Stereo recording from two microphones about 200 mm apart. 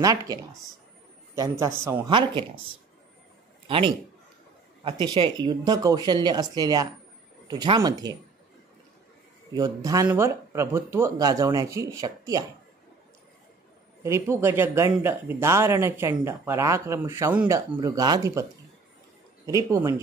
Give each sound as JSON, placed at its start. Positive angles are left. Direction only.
{"t": 0.0, "sound": "speech", "side_deg": -20}
{"t": 3.6, "sound": "a man's voice", "side_deg": -25}
{"t": 9.5, "sound": "speech", "side_deg": -20}
{"t": 14.0, "sound": "speech", "side_deg": -15}
{"t": 19.4, "sound": "speech", "side_deg": -15}